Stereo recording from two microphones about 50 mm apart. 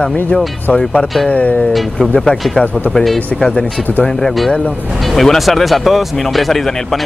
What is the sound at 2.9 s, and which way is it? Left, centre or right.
Speech, centre.